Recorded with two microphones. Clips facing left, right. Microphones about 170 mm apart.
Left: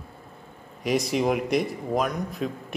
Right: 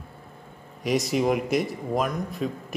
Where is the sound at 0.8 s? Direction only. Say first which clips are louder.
Even; centre (ahead or behind).